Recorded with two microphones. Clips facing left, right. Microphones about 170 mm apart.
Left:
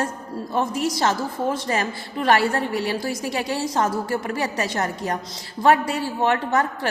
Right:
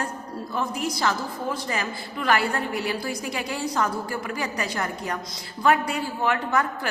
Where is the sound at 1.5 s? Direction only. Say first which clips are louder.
Left 5 dB; 40° left (ahead or behind).